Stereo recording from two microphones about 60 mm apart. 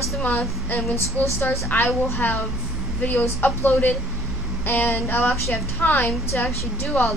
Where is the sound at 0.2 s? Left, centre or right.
Left.